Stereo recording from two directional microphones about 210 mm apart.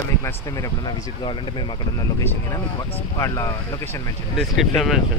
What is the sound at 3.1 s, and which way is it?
Speech, 15° left (ahead or behind).